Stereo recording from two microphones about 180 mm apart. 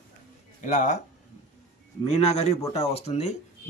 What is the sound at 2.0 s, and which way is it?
Speech, 35° left (ahead or behind).